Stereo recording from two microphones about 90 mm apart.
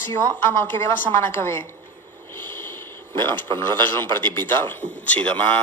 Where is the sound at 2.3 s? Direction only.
25° left (ahead or behind).